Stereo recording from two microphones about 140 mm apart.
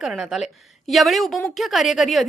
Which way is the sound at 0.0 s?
5° right (ahead or behind).